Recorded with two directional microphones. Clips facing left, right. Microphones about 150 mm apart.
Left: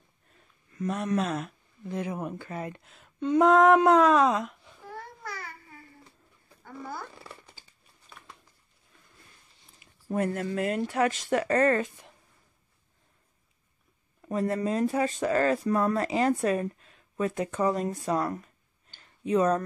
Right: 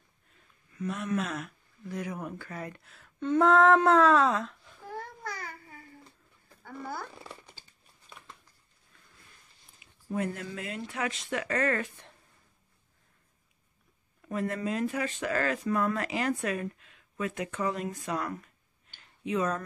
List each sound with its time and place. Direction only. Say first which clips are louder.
0.7 s speech: left 3 dB; 40° left (ahead or behind); by 4.7 s 15° left (ahead or behind)
4.8 s babbling: right 1 dB; 15° right (ahead or behind)
6.6 s speech: even; centre (ahead or behind)
10.1 s speech: left 5 dB; 45° left (ahead or behind)
14.2 s speech: left 4 dB; 30° left (ahead or behind)